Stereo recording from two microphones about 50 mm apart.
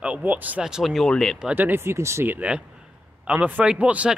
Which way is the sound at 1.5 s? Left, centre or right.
Right.